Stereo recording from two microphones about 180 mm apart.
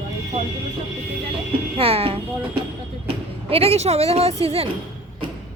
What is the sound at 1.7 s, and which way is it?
A child's voice, 30° right (ahead or behind).